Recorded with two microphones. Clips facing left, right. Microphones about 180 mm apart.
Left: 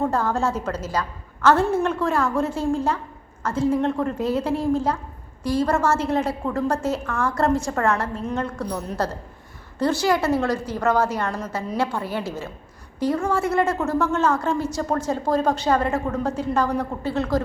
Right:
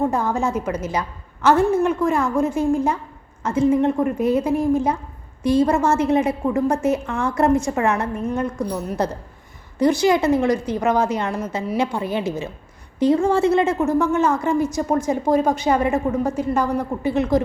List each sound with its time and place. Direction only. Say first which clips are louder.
0.0 s a woman's voice: right 2 dB; 15° right (ahead or behind)